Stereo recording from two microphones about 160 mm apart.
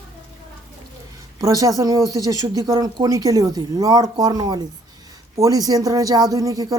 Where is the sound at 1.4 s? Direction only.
20° right (ahead or behind).